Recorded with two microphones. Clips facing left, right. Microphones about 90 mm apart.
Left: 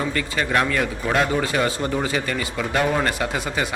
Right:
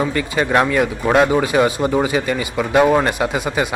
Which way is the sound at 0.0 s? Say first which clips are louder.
Right 5 dB; 20° right (ahead or behind).